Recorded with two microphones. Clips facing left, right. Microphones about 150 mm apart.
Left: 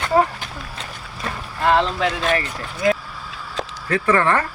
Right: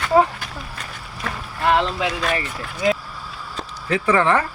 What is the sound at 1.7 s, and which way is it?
Speech, 10° right (ahead or behind).